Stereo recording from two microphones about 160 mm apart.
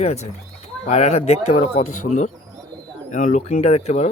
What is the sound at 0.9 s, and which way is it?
Speech, 45° left (ahead or behind).